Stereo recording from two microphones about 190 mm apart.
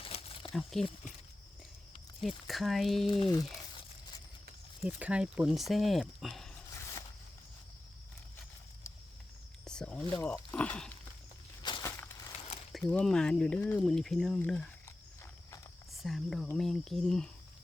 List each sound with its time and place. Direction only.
0.0 s a sound: 30° left (ahead or behind)
0.5 s speech: centre (ahead or behind)
2.2 s speech: centre (ahead or behind)
3.1 s speech: 25° left (ahead or behind)
4.8 s speech: 5° right (ahead or behind)
9.6 s speech: 5° left (ahead or behind)
11.6 s a sound: 25° left (ahead or behind)
11.9 s crushing: 10° left (ahead or behind)
12.9 s speech: 5° left (ahead or behind)
15.9 s speech: centre (ahead or behind)